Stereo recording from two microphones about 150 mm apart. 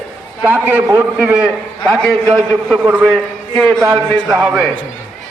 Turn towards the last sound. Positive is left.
turn(degrees=0)  # may be behind; listen again after turning